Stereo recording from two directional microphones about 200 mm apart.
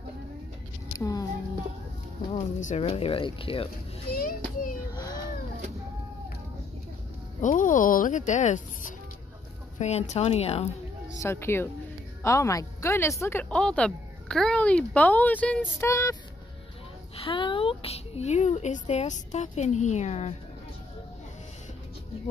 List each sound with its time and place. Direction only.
0.9 s a sound: 15° left (ahead or behind)
2.3 s speech: 35° left (ahead or behind)
4.1 s a child's voice: 50° left (ahead or behind)
4.9 s cat: 20° left (ahead or behind)
7.4 s a woman's voice: 40° left (ahead or behind)
11.2 s a woman's voice: 10° left (ahead or behind)
17.2 s a woman's voice: 25° left (ahead or behind)